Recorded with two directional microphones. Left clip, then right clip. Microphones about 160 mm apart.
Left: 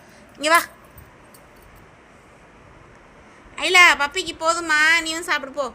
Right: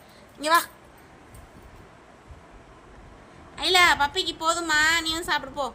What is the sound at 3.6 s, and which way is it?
A woman's voice, 15° left (ahead or behind).